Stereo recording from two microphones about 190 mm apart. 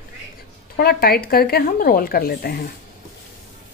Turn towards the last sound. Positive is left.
turn(degrees=50)  # may be behind; listen again after turning